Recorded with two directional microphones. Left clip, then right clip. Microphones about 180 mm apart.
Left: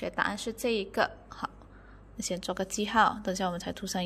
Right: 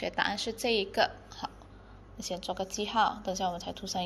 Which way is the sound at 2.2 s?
70° left (ahead or behind).